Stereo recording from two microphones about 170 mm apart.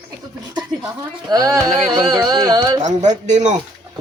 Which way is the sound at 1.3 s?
20° right (ahead or behind).